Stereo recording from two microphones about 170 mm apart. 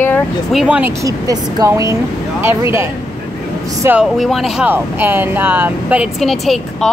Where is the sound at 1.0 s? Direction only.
20° right (ahead or behind).